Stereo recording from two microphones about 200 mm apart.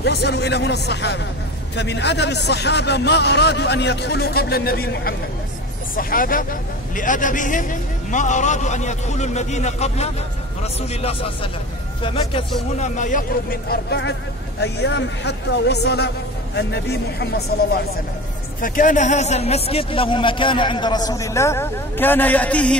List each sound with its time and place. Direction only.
0.0 s a man's voice: 55° left (ahead or behind); by 12.4 s 25° left (ahead or behind)
12.7 s a man's voice: 35° left (ahead or behind); by 17.7 s 55° left (ahead or behind)
18.6 s a man's voice: 40° left (ahead or behind); by 22.8 s 5° left (ahead or behind)